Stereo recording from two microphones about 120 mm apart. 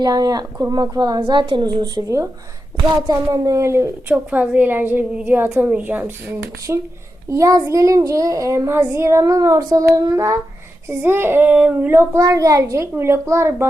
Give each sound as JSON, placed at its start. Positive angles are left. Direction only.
{"t": 0.0, "sound": "a woman's voice", "side_deg": -30}
{"t": 2.7, "sound": "child singing", "side_deg": -35}
{"t": 4.1, "sound": "a woman's voice", "side_deg": -10}
{"t": 6.7, "sound": "child singing", "side_deg": -25}